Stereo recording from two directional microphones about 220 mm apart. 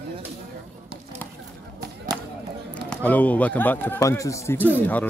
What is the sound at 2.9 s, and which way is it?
A man's voice, 5° left (ahead or behind).